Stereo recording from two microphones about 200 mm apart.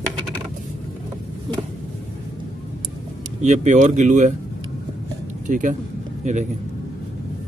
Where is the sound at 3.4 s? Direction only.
35° right (ahead or behind).